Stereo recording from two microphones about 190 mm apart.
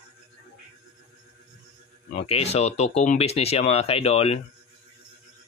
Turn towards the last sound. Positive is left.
turn(degrees=30)  # may be behind; listen again after turning